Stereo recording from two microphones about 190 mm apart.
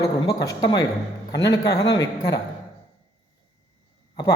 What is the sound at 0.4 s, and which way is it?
A man's voice, 20° left (ahead or behind).